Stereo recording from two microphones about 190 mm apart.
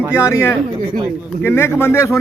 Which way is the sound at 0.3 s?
15° left (ahead or behind).